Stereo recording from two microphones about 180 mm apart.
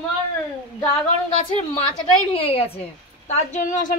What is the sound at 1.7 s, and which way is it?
A woman's voice, 30° left (ahead or behind).